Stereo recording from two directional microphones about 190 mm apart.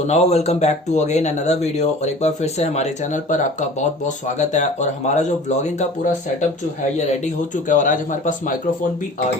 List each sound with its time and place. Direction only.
0.1 s speech: 35° left (ahead or behind)